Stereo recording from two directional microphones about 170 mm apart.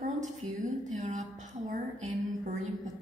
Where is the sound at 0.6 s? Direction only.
45° right (ahead or behind).